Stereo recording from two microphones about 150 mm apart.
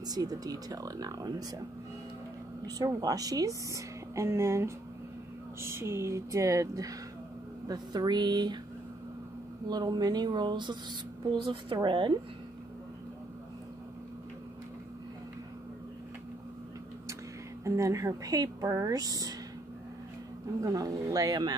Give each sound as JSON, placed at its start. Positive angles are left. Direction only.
{"t": 0.1, "sound": "speech", "side_deg": -25}
{"t": 2.6, "sound": "speech", "side_deg": -25}
{"t": 9.7, "sound": "speech", "side_deg": -25}
{"t": 17.6, "sound": "speech", "side_deg": -20}
{"t": 20.6, "sound": "speech", "side_deg": -25}